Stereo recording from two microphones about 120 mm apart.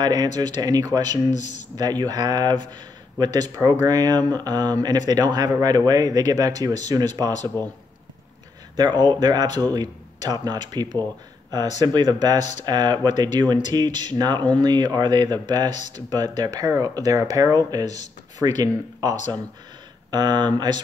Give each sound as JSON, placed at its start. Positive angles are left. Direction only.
{"t": 0.0, "sound": "speech", "side_deg": -35}
{"t": 1.3, "sound": "a man's voice", "side_deg": 80}
{"t": 1.8, "sound": "speech", "side_deg": -35}
{"t": 8.7, "sound": "speech", "side_deg": -35}
{"t": 12.4, "sound": "speech", "side_deg": 75}
{"t": 12.6, "sound": "speech", "side_deg": -35}